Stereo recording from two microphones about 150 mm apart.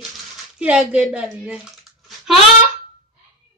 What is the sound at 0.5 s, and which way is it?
Speech, 10° right (ahead or behind).